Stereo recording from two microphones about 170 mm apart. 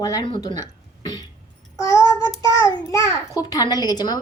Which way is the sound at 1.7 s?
20° left (ahead or behind).